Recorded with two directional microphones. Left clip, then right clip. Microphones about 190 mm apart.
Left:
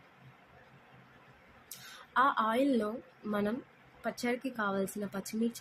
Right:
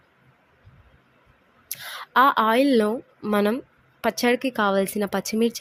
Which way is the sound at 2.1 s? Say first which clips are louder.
Right 11 dB; 55° right (ahead or behind).